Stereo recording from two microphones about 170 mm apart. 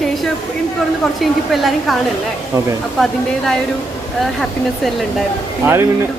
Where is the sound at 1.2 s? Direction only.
Centre (ahead or behind).